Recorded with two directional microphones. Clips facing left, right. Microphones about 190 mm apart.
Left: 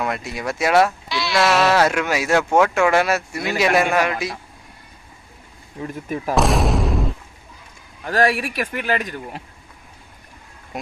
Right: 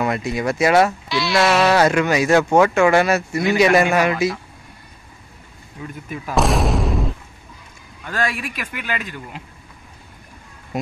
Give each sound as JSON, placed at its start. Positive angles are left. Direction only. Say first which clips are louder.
{"t": 0.0, "sound": "speech", "louder": "right 4 dB", "side_deg": 0}
{"t": 5.8, "sound": "speech", "louder": "left 4 dB", "side_deg": 35}
{"t": 6.3, "sound": "boom", "louder": "even", "side_deg": 0}
{"t": 8.0, "sound": "speech", "louder": "left 5 dB", "side_deg": 35}